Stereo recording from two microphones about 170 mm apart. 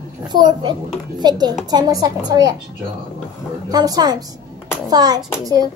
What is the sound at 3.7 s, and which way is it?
Speech, 20° right (ahead or behind).